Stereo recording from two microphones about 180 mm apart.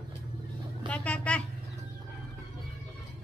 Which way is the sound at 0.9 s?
5° left (ahead or behind).